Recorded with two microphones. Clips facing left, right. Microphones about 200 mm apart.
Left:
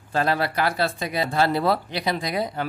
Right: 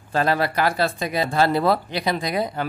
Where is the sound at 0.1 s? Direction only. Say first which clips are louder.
Right 2 dB; 50° right (ahead or behind).